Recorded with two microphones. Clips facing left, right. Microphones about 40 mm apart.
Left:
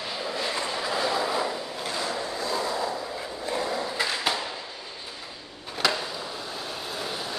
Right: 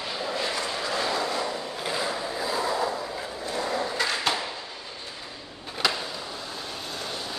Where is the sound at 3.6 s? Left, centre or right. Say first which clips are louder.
Right 1 dB; centre.